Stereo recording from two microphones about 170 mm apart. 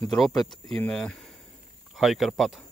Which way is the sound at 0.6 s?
5° left (ahead or behind).